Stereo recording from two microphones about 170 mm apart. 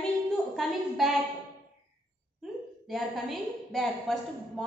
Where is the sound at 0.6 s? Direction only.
Centre (ahead or behind).